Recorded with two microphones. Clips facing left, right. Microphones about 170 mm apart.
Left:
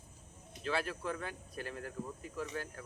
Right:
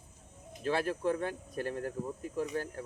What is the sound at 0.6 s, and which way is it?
Speech, 45° right (ahead or behind).